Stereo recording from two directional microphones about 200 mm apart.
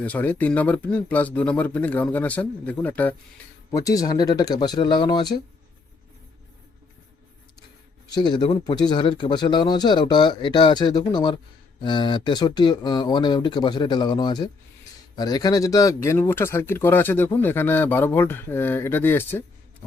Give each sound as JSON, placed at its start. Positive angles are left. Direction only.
{"t": 0.0, "sound": "speech", "side_deg": 10}
{"t": 8.0, "sound": "speech", "side_deg": 20}